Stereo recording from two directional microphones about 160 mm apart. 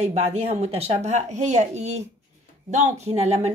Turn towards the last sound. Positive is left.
turn(degrees=-45)  # may be behind; listen again after turning